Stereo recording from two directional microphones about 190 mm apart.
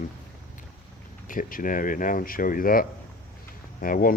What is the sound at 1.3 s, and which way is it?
Speech, 45° left (ahead or behind).